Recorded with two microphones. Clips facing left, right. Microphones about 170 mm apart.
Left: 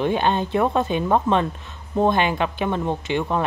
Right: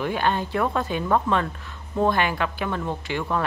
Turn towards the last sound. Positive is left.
turn(degrees=20)  # may be behind; listen again after turning